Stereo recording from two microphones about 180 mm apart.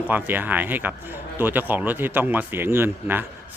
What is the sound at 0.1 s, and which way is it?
A man's voice, 10° right (ahead or behind).